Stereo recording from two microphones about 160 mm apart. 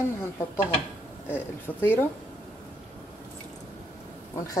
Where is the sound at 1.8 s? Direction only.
15° left (ahead or behind).